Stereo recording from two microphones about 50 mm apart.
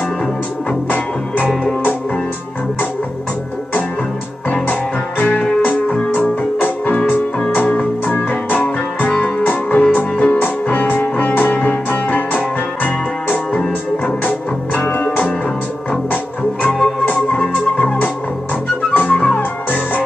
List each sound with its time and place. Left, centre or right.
0.8 s music: left
6.1 s music: left
8.1 s music: left
16.6 s music: centre
17.0 s music: left
18.9 s music: left